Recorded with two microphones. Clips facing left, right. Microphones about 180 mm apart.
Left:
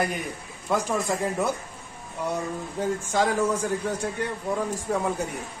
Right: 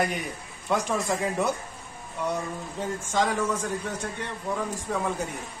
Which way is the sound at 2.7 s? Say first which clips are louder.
Left 2 dB; 10° left (ahead or behind).